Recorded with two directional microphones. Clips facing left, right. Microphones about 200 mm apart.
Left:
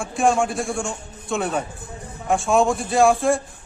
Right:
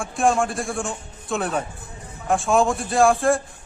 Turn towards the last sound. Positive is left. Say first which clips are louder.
# left 1 dB
turn(degrees=0)  # may be behind; listen again after turning